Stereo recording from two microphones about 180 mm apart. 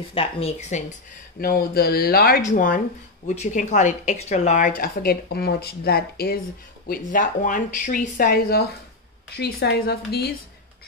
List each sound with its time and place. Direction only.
0.1 s speech: 30° left (ahead or behind)
1.4 s speech: 55° left (ahead or behind)
6.9 s speech: 50° left (ahead or behind)